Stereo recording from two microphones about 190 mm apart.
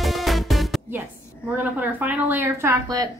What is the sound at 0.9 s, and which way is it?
A woman's voice, 10° right (ahead or behind).